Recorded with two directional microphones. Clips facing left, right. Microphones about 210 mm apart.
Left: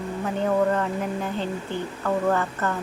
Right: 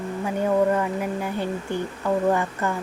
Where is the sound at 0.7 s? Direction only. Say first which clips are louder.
Right 1 dB; 10° right (ahead or behind).